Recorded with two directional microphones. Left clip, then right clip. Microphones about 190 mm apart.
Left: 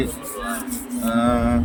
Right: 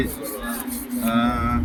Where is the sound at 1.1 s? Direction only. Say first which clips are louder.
Left 3 dB; 30° left (ahead or behind).